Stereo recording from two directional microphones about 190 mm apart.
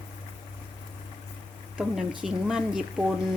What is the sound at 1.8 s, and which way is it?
Speech, 5° right (ahead or behind).